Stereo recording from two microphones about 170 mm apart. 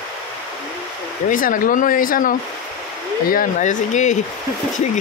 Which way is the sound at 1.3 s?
55° left (ahead or behind).